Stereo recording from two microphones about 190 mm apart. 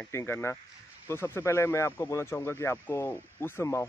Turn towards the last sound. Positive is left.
turn(degrees=15)  # may be behind; listen again after turning